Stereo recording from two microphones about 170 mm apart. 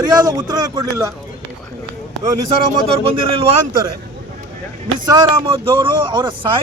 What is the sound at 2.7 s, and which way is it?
Speech, 35° right (ahead or behind).